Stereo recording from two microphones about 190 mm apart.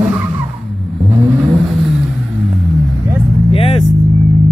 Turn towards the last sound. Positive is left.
turn(degrees=30)  # may be behind; listen again after turning